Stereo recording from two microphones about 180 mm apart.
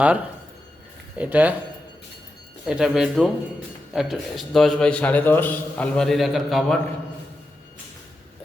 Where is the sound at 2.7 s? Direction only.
5° right (ahead or behind).